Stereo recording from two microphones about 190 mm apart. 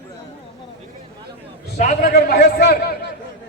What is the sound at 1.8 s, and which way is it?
Speech, 50° left (ahead or behind).